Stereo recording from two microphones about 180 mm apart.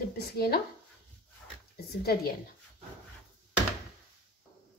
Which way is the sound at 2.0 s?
60° left (ahead or behind).